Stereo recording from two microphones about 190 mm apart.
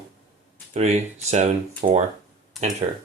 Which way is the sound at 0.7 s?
35° right (ahead or behind).